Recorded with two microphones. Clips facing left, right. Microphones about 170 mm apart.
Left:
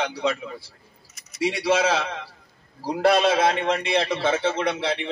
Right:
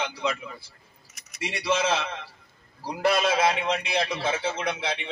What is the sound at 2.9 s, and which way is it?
A man's voice, 65° left (ahead or behind).